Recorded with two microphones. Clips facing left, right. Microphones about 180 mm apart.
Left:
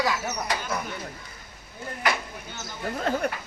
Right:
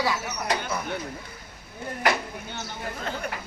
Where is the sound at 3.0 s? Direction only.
45° left (ahead or behind).